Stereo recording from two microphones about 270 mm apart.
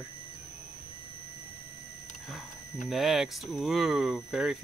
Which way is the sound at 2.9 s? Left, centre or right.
Centre.